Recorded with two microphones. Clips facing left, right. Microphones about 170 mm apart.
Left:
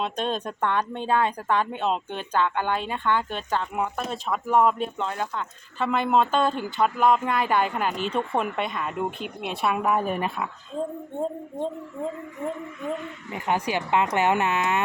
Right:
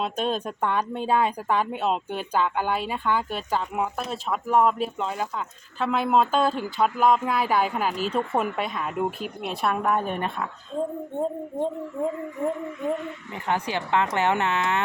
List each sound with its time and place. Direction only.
0.0 s speech: 5° right (ahead or behind)
13.3 s speech: 15° left (ahead or behind)